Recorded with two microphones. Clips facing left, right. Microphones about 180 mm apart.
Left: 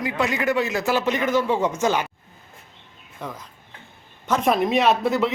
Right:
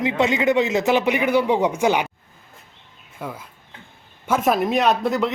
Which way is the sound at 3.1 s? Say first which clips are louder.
Right 2 dB; 5° right (ahead or behind).